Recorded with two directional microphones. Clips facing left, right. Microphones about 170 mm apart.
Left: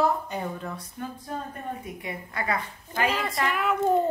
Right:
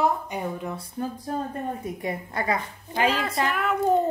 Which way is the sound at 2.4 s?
20° right (ahead or behind).